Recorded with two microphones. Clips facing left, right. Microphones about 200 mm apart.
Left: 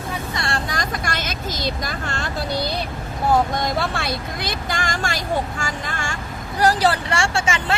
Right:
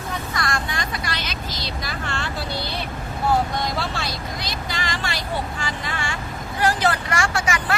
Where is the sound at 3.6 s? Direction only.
55° left (ahead or behind).